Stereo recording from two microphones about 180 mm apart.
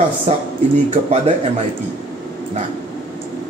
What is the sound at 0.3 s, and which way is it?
Speech, 40° right (ahead or behind).